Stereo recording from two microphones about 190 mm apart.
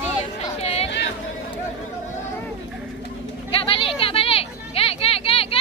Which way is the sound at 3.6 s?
30° left (ahead or behind).